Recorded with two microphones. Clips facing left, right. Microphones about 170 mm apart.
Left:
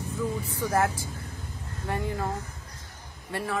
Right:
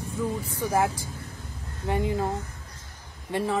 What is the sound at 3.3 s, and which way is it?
Speech, 20° right (ahead or behind).